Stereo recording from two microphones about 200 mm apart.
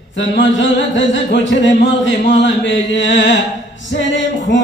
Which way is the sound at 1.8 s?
65° left (ahead or behind).